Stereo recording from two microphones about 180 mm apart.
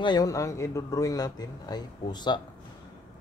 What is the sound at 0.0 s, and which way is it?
Speech, 25° left (ahead or behind).